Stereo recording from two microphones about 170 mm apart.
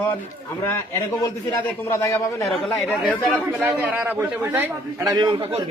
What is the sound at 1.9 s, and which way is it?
Speech, 15° left (ahead or behind).